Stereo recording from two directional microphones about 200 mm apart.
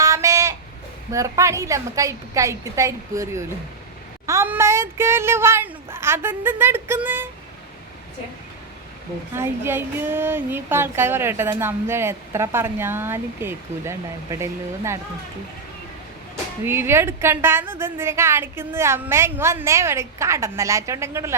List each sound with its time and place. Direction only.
0.0 s a sound: 15° right (ahead or behind)
1.1 s speech: 15° right (ahead or behind)
9.3 s speech: 10° right (ahead or behind)
16.6 s speech: 10° right (ahead or behind)